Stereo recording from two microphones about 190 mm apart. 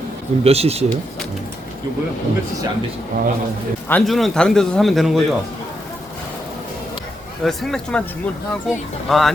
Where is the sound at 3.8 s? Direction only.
5° left (ahead or behind).